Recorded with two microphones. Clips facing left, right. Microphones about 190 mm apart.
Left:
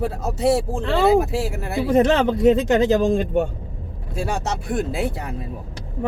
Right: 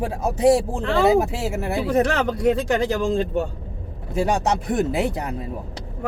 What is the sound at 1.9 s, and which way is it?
Speech, 20° left (ahead or behind).